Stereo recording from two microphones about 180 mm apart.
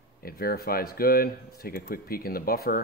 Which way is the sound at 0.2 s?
55° left (ahead or behind).